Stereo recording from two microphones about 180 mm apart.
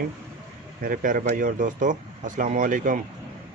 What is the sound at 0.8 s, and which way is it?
Speech, 50° right (ahead or behind).